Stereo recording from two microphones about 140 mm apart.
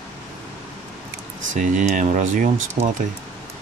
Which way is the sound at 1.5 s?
65° right (ahead or behind).